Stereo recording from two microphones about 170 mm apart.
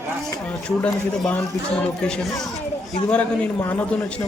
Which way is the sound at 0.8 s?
5° left (ahead or behind).